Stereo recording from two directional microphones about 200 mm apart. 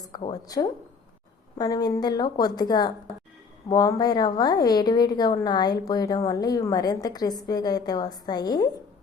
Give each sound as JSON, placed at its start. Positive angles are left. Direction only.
{"t": 0.1, "sound": "a woman's voice", "side_deg": 20}